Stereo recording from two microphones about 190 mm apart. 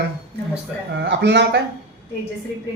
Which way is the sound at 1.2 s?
60° right (ahead or behind).